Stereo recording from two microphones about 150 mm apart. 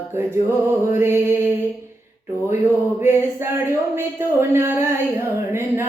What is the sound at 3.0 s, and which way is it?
Speech, 15° right (ahead or behind).